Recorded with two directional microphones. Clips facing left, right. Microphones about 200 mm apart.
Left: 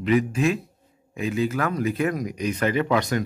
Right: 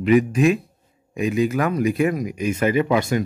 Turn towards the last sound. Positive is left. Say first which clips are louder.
# right 3 dB
turn(degrees=-10)  # may be behind; listen again after turning